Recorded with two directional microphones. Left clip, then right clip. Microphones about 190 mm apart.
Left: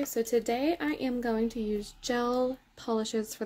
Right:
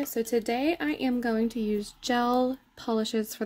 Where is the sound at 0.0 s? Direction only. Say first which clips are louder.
Even; 15° right (ahead or behind).